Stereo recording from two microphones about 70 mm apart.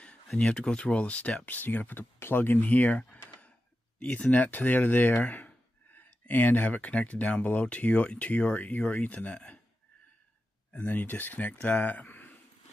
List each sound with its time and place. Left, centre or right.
0.3 s speech: centre
4.0 s speech: left
10.7 s speech: left